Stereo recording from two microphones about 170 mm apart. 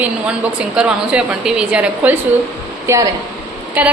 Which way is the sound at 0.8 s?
5° right (ahead or behind).